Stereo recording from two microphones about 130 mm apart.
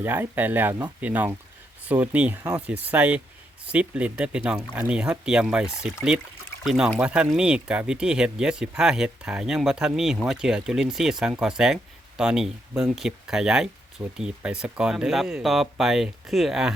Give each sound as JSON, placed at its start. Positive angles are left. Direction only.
{"t": 0.0, "sound": "speech", "side_deg": -15}